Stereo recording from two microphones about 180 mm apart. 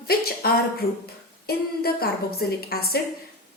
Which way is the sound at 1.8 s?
60° left (ahead or behind).